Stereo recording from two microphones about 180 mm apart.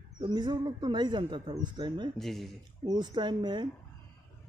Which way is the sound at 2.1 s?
Centre (ahead or behind).